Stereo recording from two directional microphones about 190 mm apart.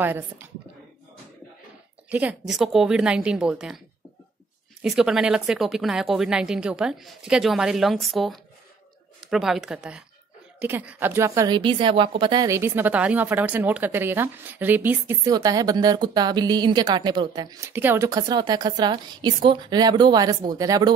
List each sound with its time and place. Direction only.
0.0 s a woman's voice: 10° right (ahead or behind)
2.0 s speech: 5° right (ahead or behind)
4.8 s speech: centre (ahead or behind); by 12.5 s 25° right (ahead or behind)
12.5 s a woman's voice: 10° right (ahead or behind)